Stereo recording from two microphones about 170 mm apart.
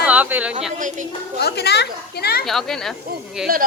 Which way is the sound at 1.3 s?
75° left (ahead or behind).